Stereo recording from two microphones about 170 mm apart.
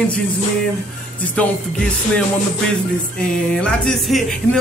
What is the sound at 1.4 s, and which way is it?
Music, 5° left (ahead or behind).